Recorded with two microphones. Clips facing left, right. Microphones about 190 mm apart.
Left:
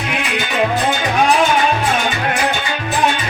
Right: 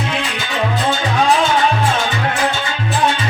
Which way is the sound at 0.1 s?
15° left (ahead or behind).